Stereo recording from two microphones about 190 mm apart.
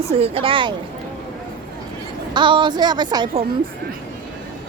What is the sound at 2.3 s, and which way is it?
A woman's voice, 25° right (ahead or behind).